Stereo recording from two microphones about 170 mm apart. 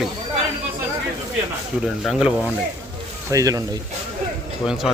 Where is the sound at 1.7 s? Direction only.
Centre (ahead or behind).